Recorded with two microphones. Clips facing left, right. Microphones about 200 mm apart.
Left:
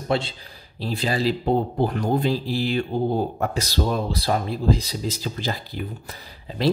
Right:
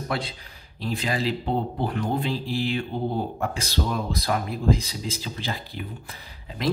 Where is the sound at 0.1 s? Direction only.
25° left (ahead or behind).